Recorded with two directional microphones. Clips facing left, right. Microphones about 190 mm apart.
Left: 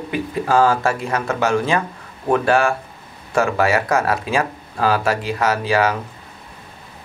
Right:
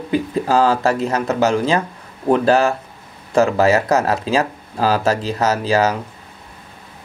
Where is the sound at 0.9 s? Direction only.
20° right (ahead or behind).